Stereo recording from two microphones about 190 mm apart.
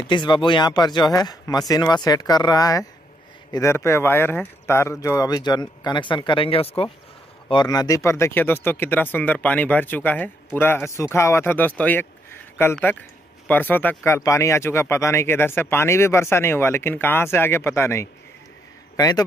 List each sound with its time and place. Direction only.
0.1 s speech: 25° left (ahead or behind)